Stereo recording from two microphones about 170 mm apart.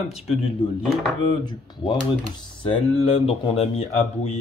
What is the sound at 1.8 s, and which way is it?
Speech, 30° left (ahead or behind).